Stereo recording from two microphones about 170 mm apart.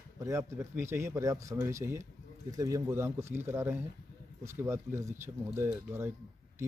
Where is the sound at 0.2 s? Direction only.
15° right (ahead or behind).